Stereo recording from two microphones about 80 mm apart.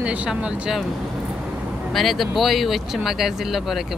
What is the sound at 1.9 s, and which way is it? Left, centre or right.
Speech, centre.